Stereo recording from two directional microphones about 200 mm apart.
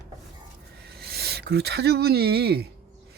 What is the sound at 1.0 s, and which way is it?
Speech, 55° right (ahead or behind).